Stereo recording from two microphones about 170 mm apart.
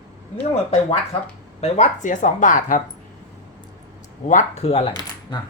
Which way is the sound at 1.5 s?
40° left (ahead or behind).